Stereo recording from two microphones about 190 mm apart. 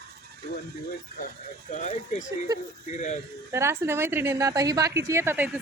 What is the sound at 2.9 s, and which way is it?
Speech, 40° left (ahead or behind).